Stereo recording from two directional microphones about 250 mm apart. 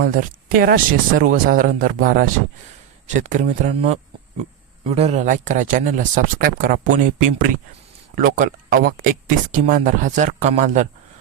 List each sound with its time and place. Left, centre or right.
0.0 s speech: right